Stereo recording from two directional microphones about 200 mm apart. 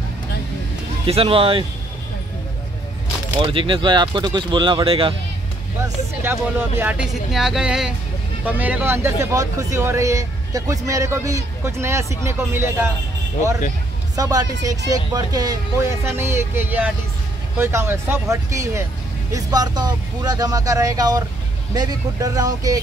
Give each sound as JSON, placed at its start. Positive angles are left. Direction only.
{"t": 1.0, "sound": "speech", "side_deg": -30}
{"t": 3.3, "sound": "speech", "side_deg": -25}
{"t": 6.8, "sound": "a woman's voice", "side_deg": -5}
{"t": 14.1, "sound": "speech", "side_deg": -15}